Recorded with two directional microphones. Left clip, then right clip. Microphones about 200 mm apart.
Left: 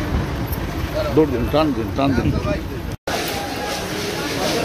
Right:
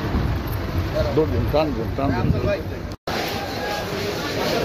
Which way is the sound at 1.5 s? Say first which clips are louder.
Left 3 dB; 40° left (ahead or behind).